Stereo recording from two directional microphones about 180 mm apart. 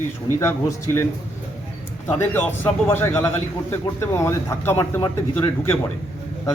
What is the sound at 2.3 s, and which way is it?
A man's voice, 10° left (ahead or behind).